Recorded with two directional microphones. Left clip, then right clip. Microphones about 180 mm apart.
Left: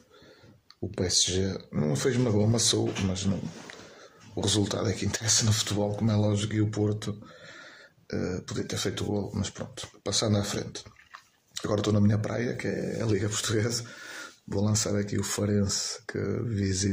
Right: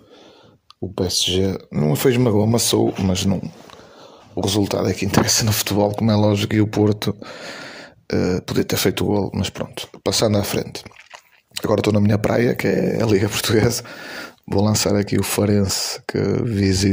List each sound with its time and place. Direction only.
0.9 s speech: 35° right (ahead or behind)
4.4 s speech: 35° right (ahead or behind)